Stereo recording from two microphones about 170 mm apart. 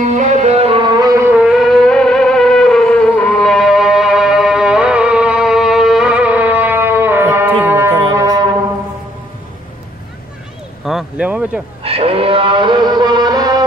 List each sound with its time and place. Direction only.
0.2 s music: 45° right (ahead or behind); by 8.5 s 20° right (ahead or behind)
10.9 s a sound: 5° right (ahead or behind)
11.8 s music: 35° right (ahead or behind)